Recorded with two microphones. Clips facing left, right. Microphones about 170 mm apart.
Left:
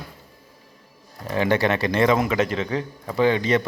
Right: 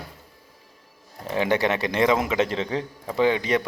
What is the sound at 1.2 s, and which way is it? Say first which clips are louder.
A man's voice: left 2 dB; 15° right (ahead or behind).